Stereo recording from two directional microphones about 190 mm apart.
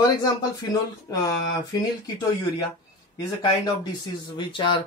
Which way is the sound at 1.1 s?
20° left (ahead or behind).